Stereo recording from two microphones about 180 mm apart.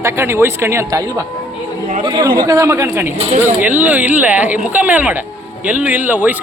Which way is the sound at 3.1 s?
35° right (ahead or behind).